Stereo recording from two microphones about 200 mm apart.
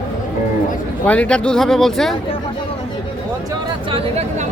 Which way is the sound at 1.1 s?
5° left (ahead or behind).